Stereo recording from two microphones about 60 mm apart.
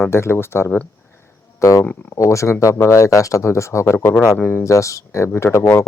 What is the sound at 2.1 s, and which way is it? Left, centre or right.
Speech, left.